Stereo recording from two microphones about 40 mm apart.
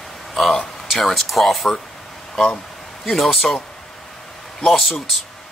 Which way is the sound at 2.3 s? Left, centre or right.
Centre.